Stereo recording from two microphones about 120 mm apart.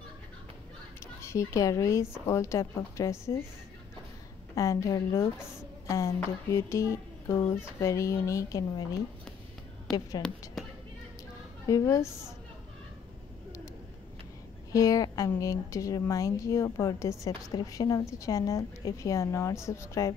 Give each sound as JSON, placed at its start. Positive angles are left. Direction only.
{"t": 1.2, "sound": "speech", "side_deg": 25}
{"t": 4.6, "sound": "speech", "side_deg": 25}
{"t": 9.9, "sound": "a woman's voice", "side_deg": 5}
{"t": 11.6, "sound": "speech", "side_deg": 25}
{"t": 14.7, "sound": "speech", "side_deg": 30}